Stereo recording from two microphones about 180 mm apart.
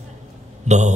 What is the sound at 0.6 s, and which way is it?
Speech, 40° right (ahead or behind).